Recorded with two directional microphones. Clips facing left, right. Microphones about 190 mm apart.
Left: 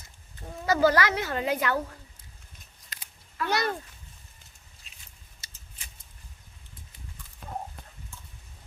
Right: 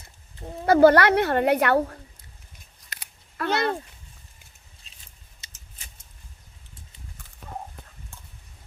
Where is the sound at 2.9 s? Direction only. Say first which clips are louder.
Right 4 dB; 70° right (ahead or behind).